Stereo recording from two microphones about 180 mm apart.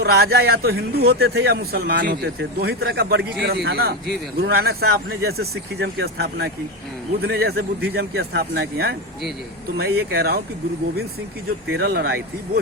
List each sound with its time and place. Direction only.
0.0 s a man's voice: 65° right (ahead or behind)
11.7 s a man's voice: 60° right (ahead or behind)